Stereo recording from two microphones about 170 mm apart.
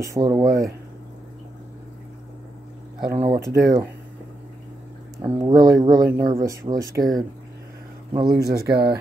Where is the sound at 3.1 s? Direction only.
30° right (ahead or behind).